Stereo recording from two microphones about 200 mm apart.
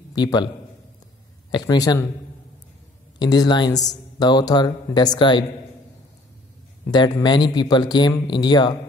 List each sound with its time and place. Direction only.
0.1 s a man's voice: 20° left (ahead or behind)
1.5 s speech: 20° left (ahead or behind)
3.2 s speech: 20° left (ahead or behind)
6.9 s speech: 20° left (ahead or behind)